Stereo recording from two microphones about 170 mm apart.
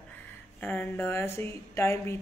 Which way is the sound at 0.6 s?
10° left (ahead or behind).